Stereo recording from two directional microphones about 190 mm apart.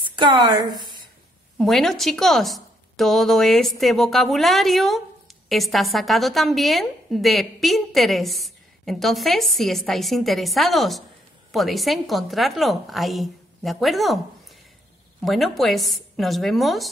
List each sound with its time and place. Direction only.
0.1 s a woman's voice: 25° right (ahead or behind)
1.6 s a woman's voice: centre (ahead or behind)